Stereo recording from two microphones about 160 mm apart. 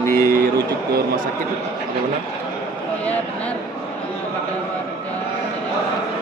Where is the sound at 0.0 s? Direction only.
15° left (ahead or behind).